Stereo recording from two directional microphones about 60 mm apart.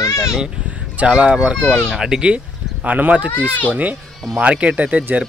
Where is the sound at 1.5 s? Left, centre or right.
Centre.